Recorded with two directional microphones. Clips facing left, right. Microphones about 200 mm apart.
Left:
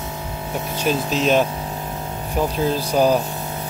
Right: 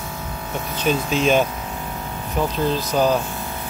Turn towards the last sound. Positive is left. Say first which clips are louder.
# left 2 dB
turn(degrees=10)  # may be behind; listen again after turning